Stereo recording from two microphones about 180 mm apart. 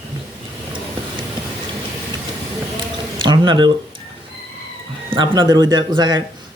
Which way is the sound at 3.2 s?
25° right (ahead or behind).